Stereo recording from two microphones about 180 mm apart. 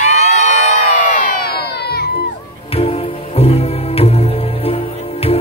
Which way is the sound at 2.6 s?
35° left (ahead or behind).